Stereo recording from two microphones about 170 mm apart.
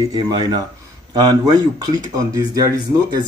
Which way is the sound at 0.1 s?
25° right (ahead or behind).